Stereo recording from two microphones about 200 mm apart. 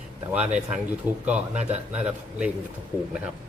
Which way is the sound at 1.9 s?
5° right (ahead or behind).